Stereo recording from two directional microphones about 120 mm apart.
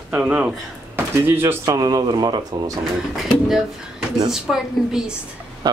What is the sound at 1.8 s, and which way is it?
Speech, 35° right (ahead or behind).